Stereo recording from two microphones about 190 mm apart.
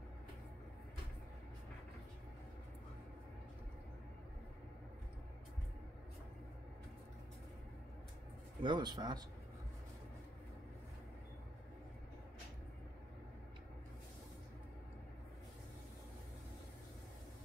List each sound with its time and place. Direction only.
8.6 s speech: 20° right (ahead or behind)